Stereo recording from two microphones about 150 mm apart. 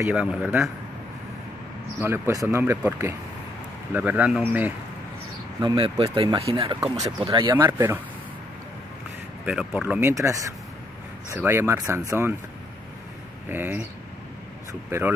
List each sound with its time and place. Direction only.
0.0 s speech: 10° right (ahead or behind)
2.0 s speech: 15° right (ahead or behind)
5.8 s speech: 35° right (ahead or behind)
7.7 s speech: 15° right (ahead or behind)
9.5 s speech: 5° right (ahead or behind)
13.5 s speech: 15° right (ahead or behind)